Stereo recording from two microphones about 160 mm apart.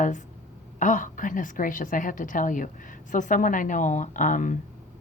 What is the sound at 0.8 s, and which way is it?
A woman's voice, 50° left (ahead or behind).